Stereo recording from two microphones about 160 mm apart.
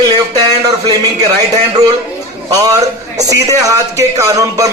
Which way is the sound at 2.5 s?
20° right (ahead or behind).